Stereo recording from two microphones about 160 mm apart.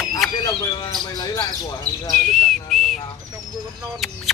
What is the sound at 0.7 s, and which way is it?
Speech, 25° left (ahead or behind).